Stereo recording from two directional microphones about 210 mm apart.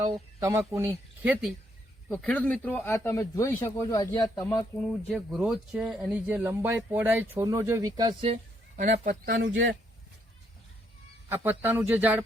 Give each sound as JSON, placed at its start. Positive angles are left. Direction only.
{"t": 0.3, "sound": "speech", "side_deg": -15}
{"t": 2.0, "sound": "speech", "side_deg": 5}
{"t": 4.8, "sound": "speech", "side_deg": 0}
{"t": 9.3, "sound": "speech", "side_deg": -60}
{"t": 11.3, "sound": "speech", "side_deg": -10}